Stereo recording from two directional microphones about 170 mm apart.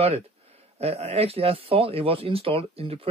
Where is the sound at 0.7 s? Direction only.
35° right (ahead or behind).